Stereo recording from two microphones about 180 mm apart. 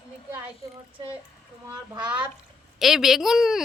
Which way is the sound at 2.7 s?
Centre (ahead or behind).